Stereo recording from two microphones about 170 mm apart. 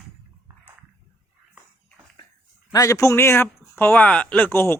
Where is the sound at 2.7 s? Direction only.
20° left (ahead or behind).